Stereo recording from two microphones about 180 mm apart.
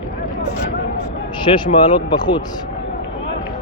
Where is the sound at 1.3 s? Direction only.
25° left (ahead or behind).